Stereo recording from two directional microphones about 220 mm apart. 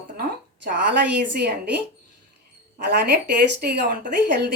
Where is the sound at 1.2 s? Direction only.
50° right (ahead or behind).